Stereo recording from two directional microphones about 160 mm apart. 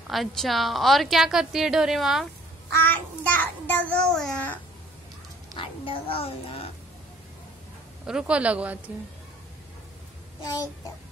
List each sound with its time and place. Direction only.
0.1 s a woman's voice: centre (ahead or behind)
2.7 s a child's voice: 10° left (ahead or behind)
5.5 s a woman's voice: 35° left (ahead or behind)
8.1 s a man's voice: 5° right (ahead or behind)